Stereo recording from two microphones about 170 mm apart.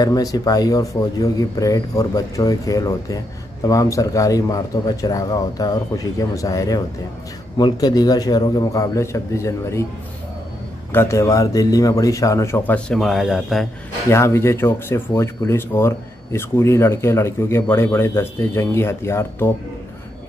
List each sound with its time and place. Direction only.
0.0 s a man's voice: 20° left (ahead or behind)
10.9 s speech: 15° left (ahead or behind); by 13.7 s centre (ahead or behind)
14.0 s speech: 15° left (ahead or behind)